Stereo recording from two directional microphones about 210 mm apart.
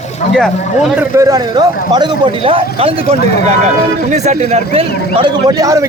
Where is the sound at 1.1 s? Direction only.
15° right (ahead or behind).